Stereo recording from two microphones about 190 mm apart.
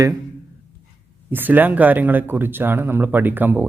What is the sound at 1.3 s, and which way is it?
Speech, 10° right (ahead or behind).